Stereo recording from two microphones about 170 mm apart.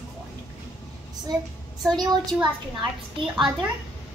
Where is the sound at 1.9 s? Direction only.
25° right (ahead or behind).